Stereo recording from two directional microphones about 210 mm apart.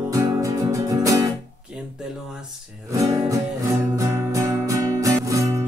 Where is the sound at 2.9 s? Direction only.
15° right (ahead or behind).